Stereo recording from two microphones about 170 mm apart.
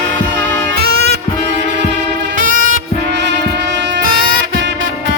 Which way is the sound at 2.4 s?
50° right (ahead or behind).